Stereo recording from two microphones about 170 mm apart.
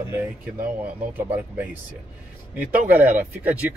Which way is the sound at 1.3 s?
10° right (ahead or behind).